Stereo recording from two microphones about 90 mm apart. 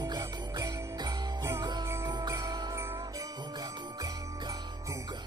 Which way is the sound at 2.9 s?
35° right (ahead or behind).